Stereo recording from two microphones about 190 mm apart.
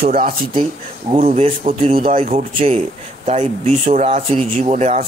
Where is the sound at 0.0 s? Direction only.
50° right (ahead or behind).